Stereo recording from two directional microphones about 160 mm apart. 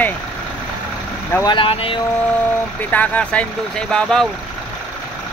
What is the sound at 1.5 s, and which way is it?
Speech, 35° left (ahead or behind).